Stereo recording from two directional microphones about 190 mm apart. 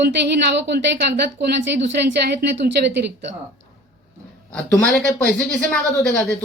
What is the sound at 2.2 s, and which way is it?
Speech, 60° right (ahead or behind).